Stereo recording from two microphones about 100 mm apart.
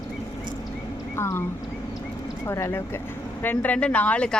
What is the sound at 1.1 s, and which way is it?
Speech, 25° left (ahead or behind).